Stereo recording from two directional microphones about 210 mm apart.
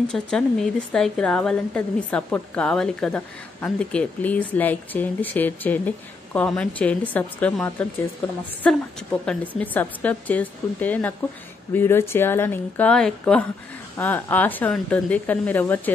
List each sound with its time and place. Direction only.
0.1 s a woman's voice: 5° left (ahead or behind)